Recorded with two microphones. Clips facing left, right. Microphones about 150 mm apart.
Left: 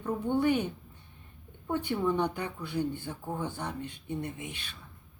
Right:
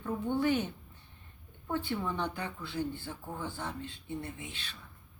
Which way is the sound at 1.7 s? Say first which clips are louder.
Left 5 dB; 15° left (ahead or behind).